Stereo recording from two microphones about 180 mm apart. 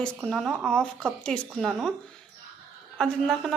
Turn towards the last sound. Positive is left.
turn(degrees=5)  # may be behind; listen again after turning